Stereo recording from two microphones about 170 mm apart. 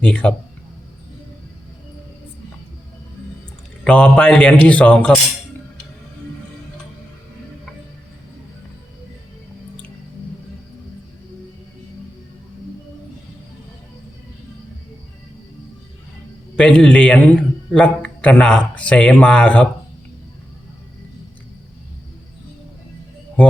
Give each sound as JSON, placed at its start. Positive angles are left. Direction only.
{"t": 0.0, "sound": "a man's voice", "side_deg": 5}
{"t": 3.8, "sound": "a man's voice", "side_deg": 5}
{"t": 16.6, "sound": "a man's voice", "side_deg": 5}